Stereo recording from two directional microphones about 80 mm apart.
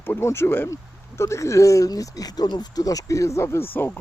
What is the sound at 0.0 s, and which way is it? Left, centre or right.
Speech, left.